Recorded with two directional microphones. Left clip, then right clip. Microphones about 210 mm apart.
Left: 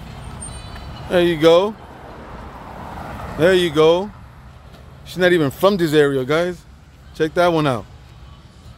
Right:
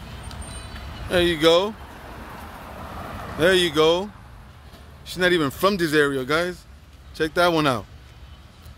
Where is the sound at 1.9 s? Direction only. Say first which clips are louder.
Left 2 dB; 60° right (ahead or behind).